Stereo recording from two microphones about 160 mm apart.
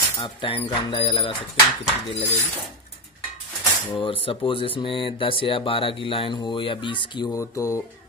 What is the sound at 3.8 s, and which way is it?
Speech, 35° left (ahead or behind).